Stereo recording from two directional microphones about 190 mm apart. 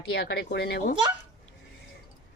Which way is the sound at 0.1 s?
60° left (ahead or behind).